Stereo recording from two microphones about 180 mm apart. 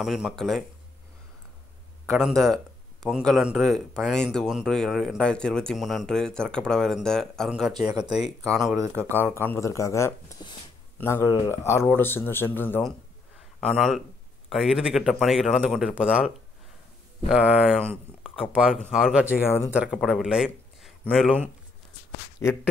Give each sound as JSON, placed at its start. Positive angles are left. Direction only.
{"t": 0.0, "sound": "a man's voice", "side_deg": 0}
{"t": 2.0, "sound": "a man's voice", "side_deg": 0}
{"t": 9.3, "sound": "a man's voice", "side_deg": 15}
{"t": 17.3, "sound": "a man's voice", "side_deg": -5}
{"t": 17.8, "sound": "a sound", "side_deg": -5}
{"t": 18.5, "sound": "a man's voice", "side_deg": -5}
{"t": 19.4, "sound": "speech", "side_deg": 10}
{"t": 19.7, "sound": "a man's voice", "side_deg": -5}